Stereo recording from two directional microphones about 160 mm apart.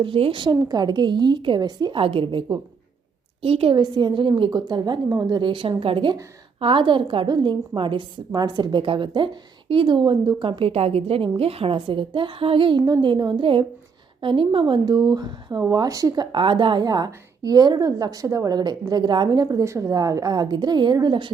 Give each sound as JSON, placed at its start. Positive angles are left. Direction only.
{"t": 0.0, "sound": "a woman's voice", "side_deg": -30}